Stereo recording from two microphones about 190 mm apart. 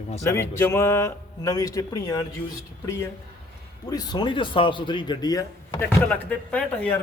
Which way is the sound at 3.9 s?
20° left (ahead or behind).